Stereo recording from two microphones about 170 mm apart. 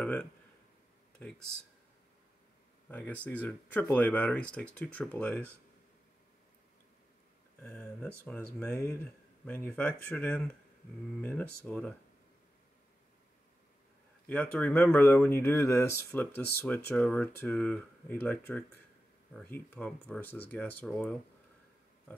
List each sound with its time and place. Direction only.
0.0 s speech: 10° left (ahead or behind)
2.9 s speech: 10° left (ahead or behind)
7.6 s speech: 5° left (ahead or behind)
14.2 s speech: 10° left (ahead or behind)